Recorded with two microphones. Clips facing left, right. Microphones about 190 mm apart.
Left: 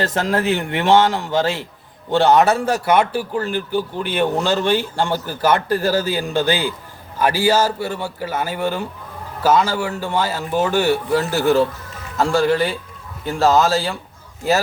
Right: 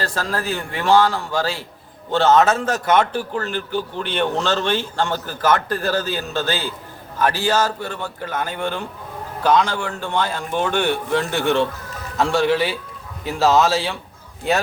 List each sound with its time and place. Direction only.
0.0 s a man's voice: 20° left (ahead or behind); by 14.6 s 5° left (ahead or behind)